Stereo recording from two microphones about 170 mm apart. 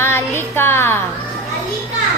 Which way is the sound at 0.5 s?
15° left (ahead or behind).